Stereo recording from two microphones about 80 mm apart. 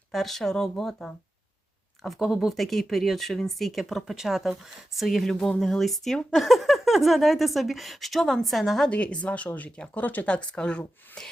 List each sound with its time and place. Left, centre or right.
0.1 s speech: centre
8.9 s speech: centre